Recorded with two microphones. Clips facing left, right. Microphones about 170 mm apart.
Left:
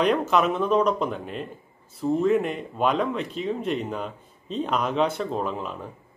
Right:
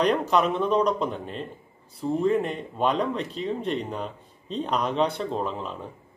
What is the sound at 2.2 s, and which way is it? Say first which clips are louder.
Speech: right 1 dB; 35° right (ahead or behind).